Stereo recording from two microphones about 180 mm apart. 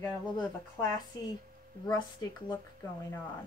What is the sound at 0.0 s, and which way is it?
A woman's voice, 20° left (ahead or behind).